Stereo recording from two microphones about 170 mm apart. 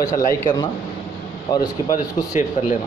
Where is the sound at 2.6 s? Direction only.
35° left (ahead or behind).